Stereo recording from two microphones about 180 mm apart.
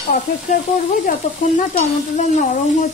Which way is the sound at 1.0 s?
45° left (ahead or behind).